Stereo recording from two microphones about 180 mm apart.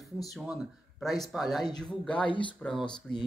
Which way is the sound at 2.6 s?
5° left (ahead or behind).